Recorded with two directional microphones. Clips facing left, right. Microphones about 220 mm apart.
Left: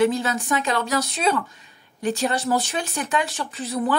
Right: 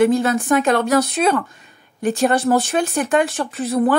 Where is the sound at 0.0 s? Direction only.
55° right (ahead or behind).